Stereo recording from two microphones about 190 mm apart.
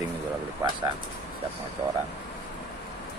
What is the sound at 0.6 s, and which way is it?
Speech, 15° right (ahead or behind).